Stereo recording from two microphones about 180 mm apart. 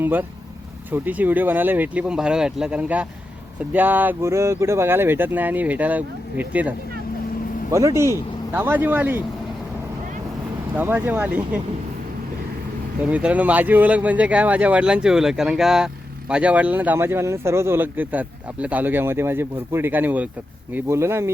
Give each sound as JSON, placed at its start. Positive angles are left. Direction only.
{"t": 0.0, "sound": "speech", "side_deg": -10}
{"t": 10.8, "sound": "speech", "side_deg": -10}
{"t": 13.0, "sound": "speech", "side_deg": -5}